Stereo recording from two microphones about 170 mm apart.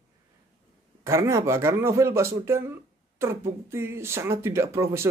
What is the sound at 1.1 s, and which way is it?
Speech, 15° right (ahead or behind).